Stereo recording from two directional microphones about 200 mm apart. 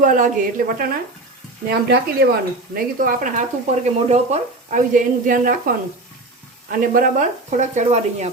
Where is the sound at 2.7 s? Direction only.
45° right (ahead or behind).